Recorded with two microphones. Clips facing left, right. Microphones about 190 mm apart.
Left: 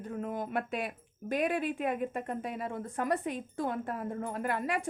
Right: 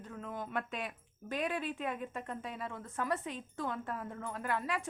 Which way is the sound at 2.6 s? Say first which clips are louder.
Left 5 dB; 40° left (ahead or behind).